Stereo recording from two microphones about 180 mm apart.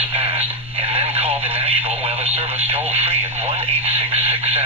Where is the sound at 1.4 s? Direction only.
10° right (ahead or behind).